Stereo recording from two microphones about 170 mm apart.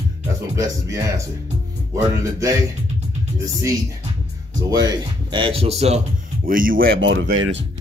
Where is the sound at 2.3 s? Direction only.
20° right (ahead or behind).